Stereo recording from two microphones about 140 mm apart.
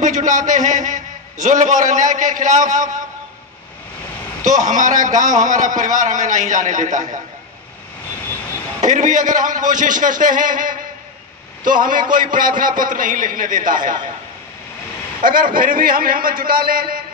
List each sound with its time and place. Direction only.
0.0 s a man's voice: 65° right (ahead or behind)
4.5 s a man's voice: 65° right (ahead or behind)
8.8 s a man's voice: 65° right (ahead or behind)
15.2 s a man's voice: 85° right